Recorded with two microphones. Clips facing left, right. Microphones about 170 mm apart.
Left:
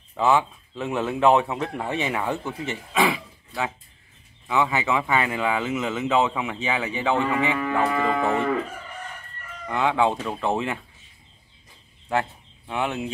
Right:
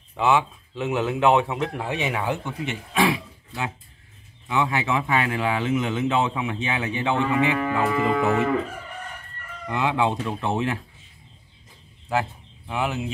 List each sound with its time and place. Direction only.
0.1 s speech: centre (ahead or behind)
4.5 s speech: centre (ahead or behind)
8.1 s moo: 30° left (ahead or behind)
9.7 s speech: centre (ahead or behind)
12.1 s speech: 5° right (ahead or behind)